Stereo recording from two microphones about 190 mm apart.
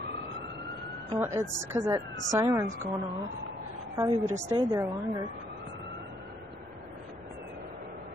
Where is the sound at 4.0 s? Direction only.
20° right (ahead or behind).